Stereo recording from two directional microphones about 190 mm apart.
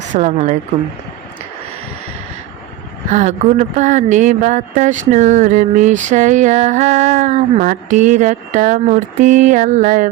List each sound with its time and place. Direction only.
0.1 s speech: 35° right (ahead or behind)
3.1 s speech: 40° right (ahead or behind)